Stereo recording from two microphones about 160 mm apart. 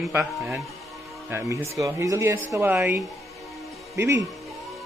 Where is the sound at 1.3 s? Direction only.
20° right (ahead or behind).